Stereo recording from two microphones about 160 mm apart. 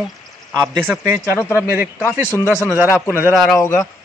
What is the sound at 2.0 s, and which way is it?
Speech, 15° left (ahead or behind).